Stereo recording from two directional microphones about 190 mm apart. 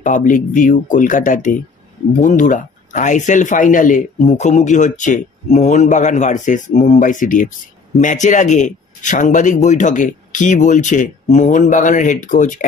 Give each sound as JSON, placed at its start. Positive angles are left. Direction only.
{"t": 0.0, "sound": "speech", "side_deg": 40}